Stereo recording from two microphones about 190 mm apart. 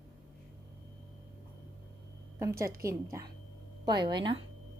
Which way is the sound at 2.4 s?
15° right (ahead or behind).